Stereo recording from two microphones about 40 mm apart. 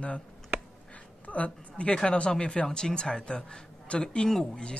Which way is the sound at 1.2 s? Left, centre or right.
Left.